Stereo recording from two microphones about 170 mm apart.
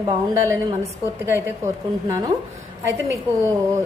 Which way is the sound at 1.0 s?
15° right (ahead or behind).